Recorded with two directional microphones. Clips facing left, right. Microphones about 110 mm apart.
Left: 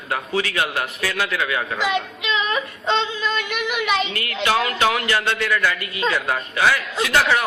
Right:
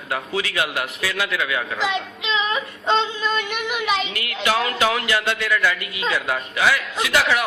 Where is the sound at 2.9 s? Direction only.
40° right (ahead or behind).